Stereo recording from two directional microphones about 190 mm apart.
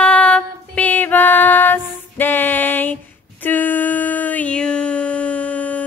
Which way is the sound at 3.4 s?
10° left (ahead or behind).